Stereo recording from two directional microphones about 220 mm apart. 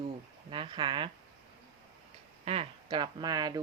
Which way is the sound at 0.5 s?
20° right (ahead or behind).